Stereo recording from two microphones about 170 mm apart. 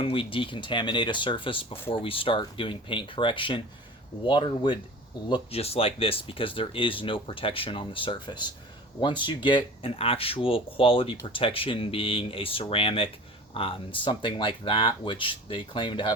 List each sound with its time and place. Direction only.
0.0 s speech: 30° left (ahead or behind)